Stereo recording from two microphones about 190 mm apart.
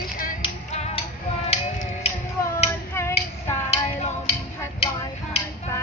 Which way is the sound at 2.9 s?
15° left (ahead or behind).